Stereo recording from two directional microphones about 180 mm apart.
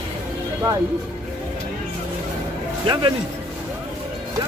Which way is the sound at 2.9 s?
25° right (ahead or behind).